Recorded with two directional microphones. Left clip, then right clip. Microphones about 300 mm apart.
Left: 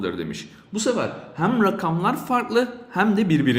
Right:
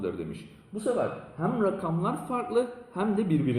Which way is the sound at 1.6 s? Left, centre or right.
Left.